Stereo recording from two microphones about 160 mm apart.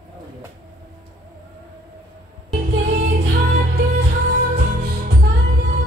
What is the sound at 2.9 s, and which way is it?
Music, 65° right (ahead or behind).